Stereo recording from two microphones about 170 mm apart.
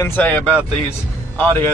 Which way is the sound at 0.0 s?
10° left (ahead or behind).